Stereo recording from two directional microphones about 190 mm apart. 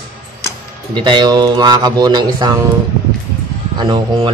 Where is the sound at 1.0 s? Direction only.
20° right (ahead or behind).